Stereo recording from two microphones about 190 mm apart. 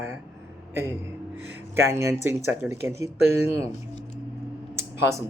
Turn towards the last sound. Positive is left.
turn(degrees=-15)  # may be behind; listen again after turning